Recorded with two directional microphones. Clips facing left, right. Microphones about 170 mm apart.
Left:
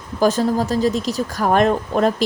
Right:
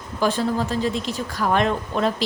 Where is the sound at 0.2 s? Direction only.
40° left (ahead or behind).